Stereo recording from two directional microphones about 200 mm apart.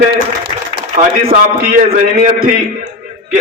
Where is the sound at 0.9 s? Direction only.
40° right (ahead or behind).